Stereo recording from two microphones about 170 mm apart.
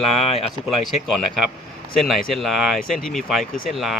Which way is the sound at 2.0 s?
Centre (ahead or behind).